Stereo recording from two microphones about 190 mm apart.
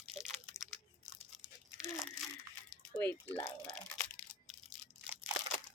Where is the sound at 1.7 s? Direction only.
5° right (ahead or behind).